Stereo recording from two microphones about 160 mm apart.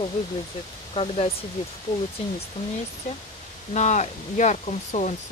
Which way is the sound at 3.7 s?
45° left (ahead or behind).